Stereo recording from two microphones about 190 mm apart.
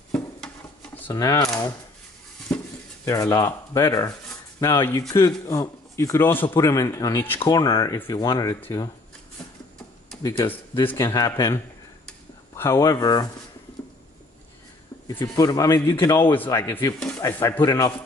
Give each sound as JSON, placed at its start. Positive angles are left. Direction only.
{"t": 0.1, "sound": "a sound", "side_deg": 5}
{"t": 2.5, "sound": "dishes", "side_deg": 5}
{"t": 3.1, "sound": "a man's voice", "side_deg": 15}
{"t": 10.2, "sound": "a man's voice", "side_deg": 15}
{"t": 15.0, "sound": "a man's voice", "side_deg": 20}